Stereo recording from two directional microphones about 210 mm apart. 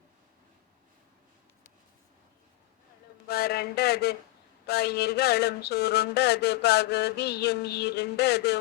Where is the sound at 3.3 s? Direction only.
50° left (ahead or behind).